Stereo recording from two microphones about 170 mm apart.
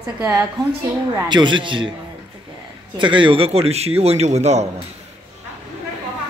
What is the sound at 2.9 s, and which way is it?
A man's voice, 30° right (ahead or behind).